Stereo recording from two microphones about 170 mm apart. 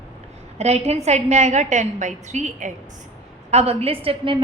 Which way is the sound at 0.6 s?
40° right (ahead or behind).